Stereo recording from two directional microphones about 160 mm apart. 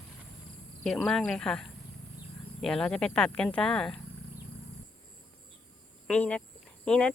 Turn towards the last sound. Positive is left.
turn(degrees=5)  # may be behind; listen again after turning